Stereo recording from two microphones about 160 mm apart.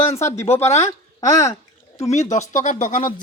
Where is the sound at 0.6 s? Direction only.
45° left (ahead or behind).